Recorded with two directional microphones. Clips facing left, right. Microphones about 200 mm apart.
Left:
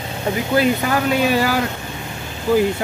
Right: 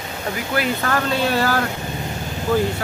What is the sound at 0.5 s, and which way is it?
Speech, 10° left (ahead or behind).